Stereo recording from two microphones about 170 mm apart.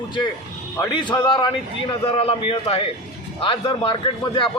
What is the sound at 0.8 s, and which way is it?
A man's voice, 25° left (ahead or behind).